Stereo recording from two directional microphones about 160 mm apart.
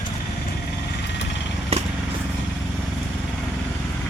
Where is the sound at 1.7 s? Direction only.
40° right (ahead or behind).